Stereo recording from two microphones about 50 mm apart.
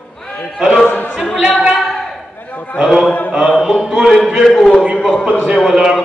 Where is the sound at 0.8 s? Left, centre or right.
Left.